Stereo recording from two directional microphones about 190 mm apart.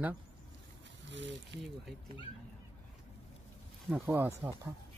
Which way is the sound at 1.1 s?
70° right (ahead or behind).